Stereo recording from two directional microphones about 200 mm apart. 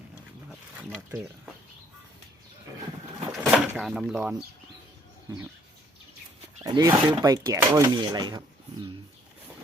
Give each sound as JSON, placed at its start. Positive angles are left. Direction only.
{"t": 3.4, "sound": "speech", "side_deg": 0}
{"t": 6.7, "sound": "speech", "side_deg": -20}